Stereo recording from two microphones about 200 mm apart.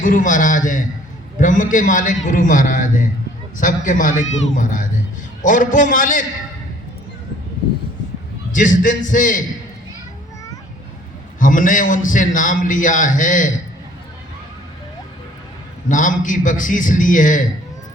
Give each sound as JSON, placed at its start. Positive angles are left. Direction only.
{"t": 0.0, "sound": "a man's voice", "side_deg": 40}
{"t": 8.5, "sound": "a man's voice", "side_deg": 40}
{"t": 11.3, "sound": "a man's voice", "side_deg": 40}
{"t": 15.9, "sound": "a man's voice", "side_deg": 40}